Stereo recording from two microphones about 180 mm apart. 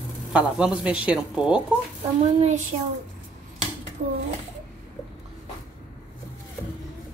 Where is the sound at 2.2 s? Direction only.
40° right (ahead or behind).